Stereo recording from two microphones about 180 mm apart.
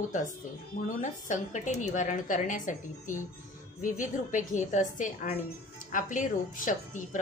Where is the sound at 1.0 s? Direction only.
45° left (ahead or behind).